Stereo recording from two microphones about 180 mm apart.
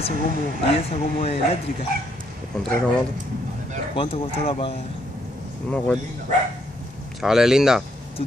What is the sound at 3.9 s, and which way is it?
Speech, 30° left (ahead or behind).